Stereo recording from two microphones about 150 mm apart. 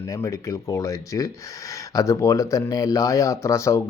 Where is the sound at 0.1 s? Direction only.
20° left (ahead or behind).